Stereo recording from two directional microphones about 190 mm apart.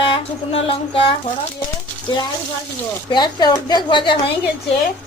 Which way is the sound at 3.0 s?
25° left (ahead or behind).